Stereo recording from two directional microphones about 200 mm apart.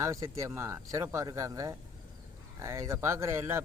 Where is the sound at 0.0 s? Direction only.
15° right (ahead or behind).